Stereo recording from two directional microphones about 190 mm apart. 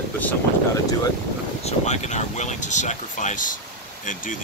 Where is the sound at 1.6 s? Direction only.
35° left (ahead or behind).